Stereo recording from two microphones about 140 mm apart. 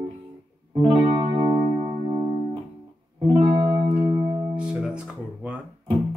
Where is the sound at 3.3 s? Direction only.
40° right (ahead or behind).